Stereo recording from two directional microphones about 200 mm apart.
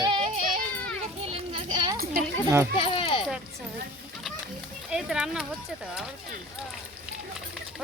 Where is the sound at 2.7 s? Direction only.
25° left (ahead or behind).